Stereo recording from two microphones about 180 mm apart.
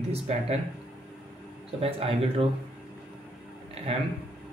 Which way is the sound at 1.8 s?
35° right (ahead or behind).